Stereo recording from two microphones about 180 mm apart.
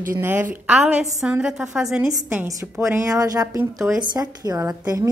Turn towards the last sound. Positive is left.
turn(degrees=-20)  # may be behind; listen again after turning